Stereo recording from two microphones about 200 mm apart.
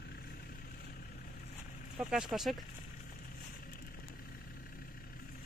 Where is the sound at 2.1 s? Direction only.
Centre (ahead or behind).